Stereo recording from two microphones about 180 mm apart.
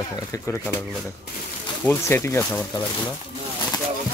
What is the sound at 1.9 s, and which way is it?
Speech, 15° left (ahead or behind).